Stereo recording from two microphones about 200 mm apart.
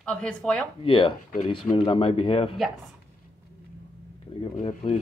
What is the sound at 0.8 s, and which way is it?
Speech, 25° left (ahead or behind).